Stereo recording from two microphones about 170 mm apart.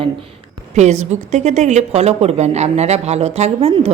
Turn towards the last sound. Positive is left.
turn(degrees=-35)  # may be behind; listen again after turning